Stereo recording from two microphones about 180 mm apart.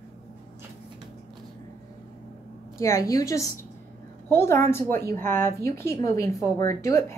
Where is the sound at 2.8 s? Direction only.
15° left (ahead or behind).